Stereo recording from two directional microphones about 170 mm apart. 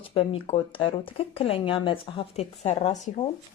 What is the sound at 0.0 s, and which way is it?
A woman's voice, 30° left (ahead or behind).